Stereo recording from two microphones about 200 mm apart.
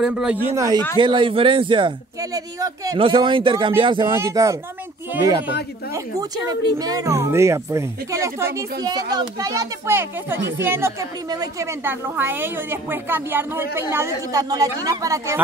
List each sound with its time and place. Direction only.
0.0 s a man's voice: 5° right (ahead or behind)
0.9 s a man's voice: 25° right (ahead or behind)
4.1 s a woman's voice: 15° right (ahead or behind)